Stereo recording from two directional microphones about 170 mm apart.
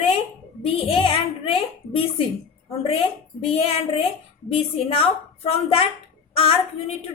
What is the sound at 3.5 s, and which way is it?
A woman's voice, 35° left (ahead or behind).